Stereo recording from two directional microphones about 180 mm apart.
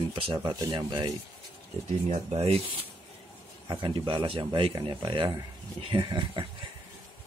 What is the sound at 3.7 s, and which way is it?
Speech, 25° right (ahead or behind).